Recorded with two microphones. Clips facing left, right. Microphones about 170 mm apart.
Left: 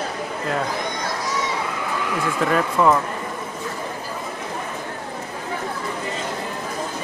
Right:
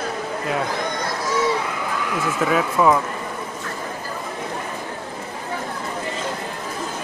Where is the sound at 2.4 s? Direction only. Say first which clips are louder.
Even; 5° right (ahead or behind).